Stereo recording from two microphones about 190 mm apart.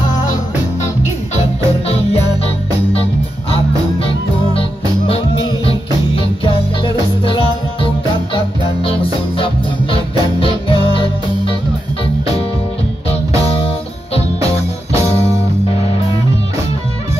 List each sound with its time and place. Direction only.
1.3 s music: 35° left (ahead or behind)
3.4 s music: 30° left (ahead or behind)
15.0 s music: 35° left (ahead or behind)